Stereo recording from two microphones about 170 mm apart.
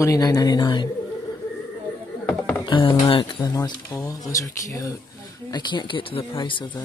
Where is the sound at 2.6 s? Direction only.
30° left (ahead or behind).